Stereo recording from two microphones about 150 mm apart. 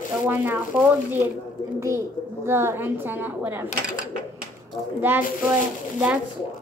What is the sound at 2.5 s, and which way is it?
A woman's voice, 15° right (ahead or behind).